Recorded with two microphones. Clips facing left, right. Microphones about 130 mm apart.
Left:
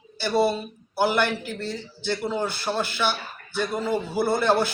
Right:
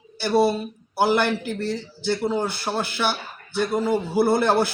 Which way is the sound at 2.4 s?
15° right (ahead or behind).